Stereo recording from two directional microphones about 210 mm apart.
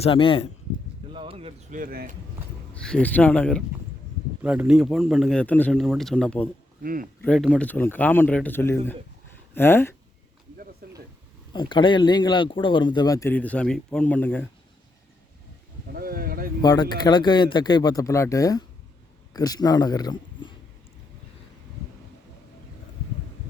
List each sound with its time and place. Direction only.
0.0 s speech: 25° left (ahead or behind)
1.1 s a sound: 25° right (ahead or behind)
1.8 s speech: 45° right (ahead or behind)
2.7 s a man's voice: 5° left (ahead or behind)
6.8 s speech: 40° right (ahead or behind)
7.2 s speech: 5° left (ahead or behind)
10.8 s a sound: 45° right (ahead or behind)
11.5 s speech: 20° left (ahead or behind)
16.0 s a sound: 45° right (ahead or behind)
16.6 s a man's voice: 20° left (ahead or behind)